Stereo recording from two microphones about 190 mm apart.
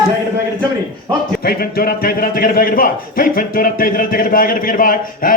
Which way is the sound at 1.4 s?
50° left (ahead or behind).